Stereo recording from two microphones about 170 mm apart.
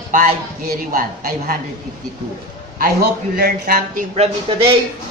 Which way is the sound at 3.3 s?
60° right (ahead or behind).